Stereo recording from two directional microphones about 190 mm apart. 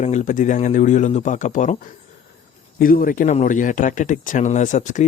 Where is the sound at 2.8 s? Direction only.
50° left (ahead or behind).